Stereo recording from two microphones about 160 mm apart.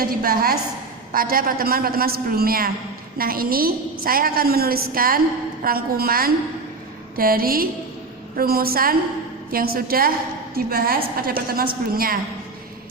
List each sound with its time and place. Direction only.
0.0 s a woman's voice: 65° right (ahead or behind)